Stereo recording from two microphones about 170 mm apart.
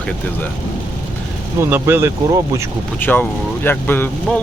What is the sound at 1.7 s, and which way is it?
Speech, 15° right (ahead or behind).